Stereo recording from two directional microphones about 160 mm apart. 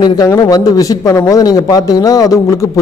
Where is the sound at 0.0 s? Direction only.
25° left (ahead or behind).